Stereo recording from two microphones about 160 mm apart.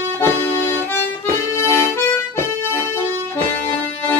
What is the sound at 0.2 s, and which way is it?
Accordion, 15° left (ahead or behind).